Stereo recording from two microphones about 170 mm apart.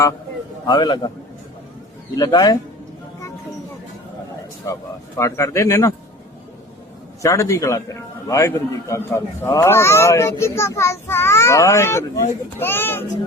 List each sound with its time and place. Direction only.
0.7 s speech: 25° left (ahead or behind)
2.1 s speech: 20° left (ahead or behind)
4.6 s a man's voice: 15° left (ahead or behind)
7.2 s a man's voice: 20° left (ahead or behind)